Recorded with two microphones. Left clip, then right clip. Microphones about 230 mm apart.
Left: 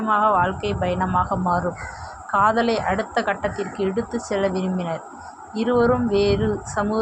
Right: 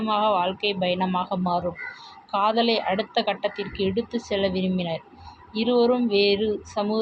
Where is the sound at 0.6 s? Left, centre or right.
Left.